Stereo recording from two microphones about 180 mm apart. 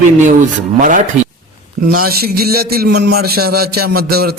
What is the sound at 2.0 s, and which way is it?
A man's voice, 55° right (ahead or behind).